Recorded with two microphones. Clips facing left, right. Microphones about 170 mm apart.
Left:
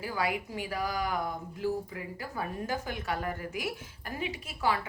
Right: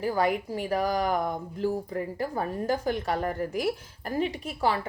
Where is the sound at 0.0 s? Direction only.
40° right (ahead or behind).